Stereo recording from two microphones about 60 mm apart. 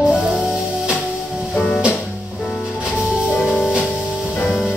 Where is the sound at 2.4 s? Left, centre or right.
Centre.